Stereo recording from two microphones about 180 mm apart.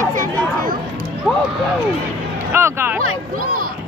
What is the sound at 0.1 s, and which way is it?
Chatter, 45° right (ahead or behind).